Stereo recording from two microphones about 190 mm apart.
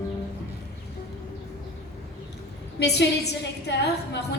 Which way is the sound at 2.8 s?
60° left (ahead or behind).